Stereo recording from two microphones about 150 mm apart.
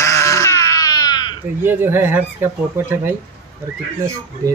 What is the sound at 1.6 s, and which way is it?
Speech, 15° right (ahead or behind).